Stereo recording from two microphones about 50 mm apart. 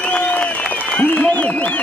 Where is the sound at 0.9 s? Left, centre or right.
Left.